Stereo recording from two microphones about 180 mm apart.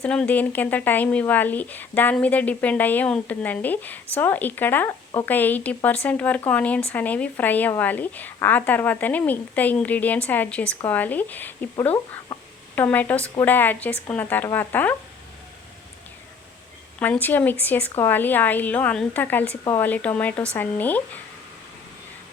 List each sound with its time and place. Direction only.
0.0 s speech: 5° left (ahead or behind)
17.0 s speech: 10° left (ahead or behind)